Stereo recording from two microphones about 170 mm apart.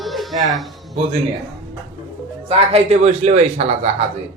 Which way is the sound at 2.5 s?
35° right (ahead or behind).